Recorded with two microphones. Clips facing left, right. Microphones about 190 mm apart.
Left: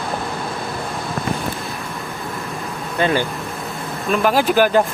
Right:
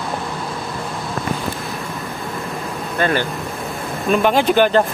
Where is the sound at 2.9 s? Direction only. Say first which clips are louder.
Left 1 dB; 15° left (ahead or behind).